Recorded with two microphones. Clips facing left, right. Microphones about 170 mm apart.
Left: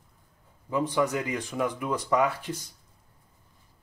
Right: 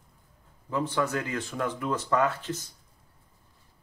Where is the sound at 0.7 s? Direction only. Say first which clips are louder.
Left 2 dB; 15° left (ahead or behind).